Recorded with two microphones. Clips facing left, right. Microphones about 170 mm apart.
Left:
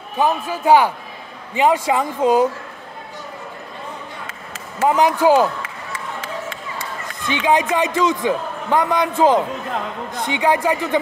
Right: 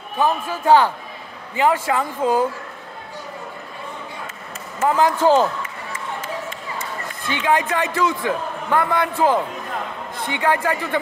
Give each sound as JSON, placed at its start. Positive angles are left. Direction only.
{"t": 0.2, "sound": "a man's voice", "side_deg": 15}
{"t": 4.8, "sound": "speech", "side_deg": 15}
{"t": 7.2, "sound": "a man's voice", "side_deg": 20}